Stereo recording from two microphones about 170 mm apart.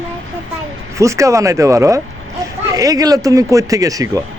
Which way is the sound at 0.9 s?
20° right (ahead or behind).